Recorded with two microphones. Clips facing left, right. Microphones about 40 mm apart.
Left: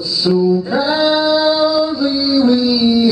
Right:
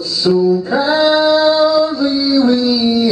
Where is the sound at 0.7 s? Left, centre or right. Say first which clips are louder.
Right 2 dB; centre.